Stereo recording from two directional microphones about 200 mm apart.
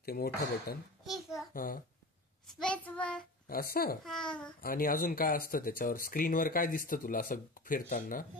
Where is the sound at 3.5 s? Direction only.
50° left (ahead or behind).